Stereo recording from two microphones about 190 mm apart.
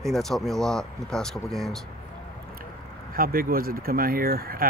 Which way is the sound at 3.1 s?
50° right (ahead or behind).